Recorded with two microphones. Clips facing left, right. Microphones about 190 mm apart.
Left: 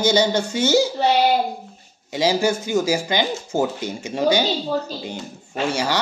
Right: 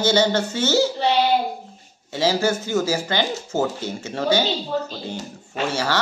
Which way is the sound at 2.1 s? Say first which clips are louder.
Left 1 dB; 15° left (ahead or behind).